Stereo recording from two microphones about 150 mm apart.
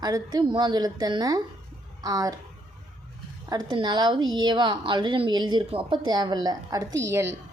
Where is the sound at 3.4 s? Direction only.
30° right (ahead or behind).